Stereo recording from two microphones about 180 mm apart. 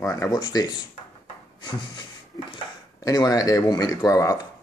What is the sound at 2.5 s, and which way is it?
Speech, 20° left (ahead or behind).